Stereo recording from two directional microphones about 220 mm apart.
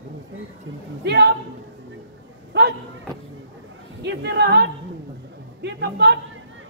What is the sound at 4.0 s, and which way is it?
Music, 50° right (ahead or behind).